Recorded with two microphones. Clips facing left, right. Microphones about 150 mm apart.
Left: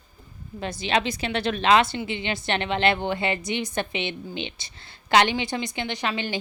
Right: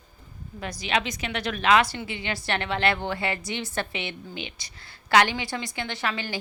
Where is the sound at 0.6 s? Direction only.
25° left (ahead or behind).